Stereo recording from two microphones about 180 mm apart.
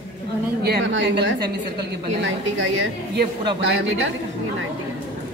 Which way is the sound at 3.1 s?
75° right (ahead or behind).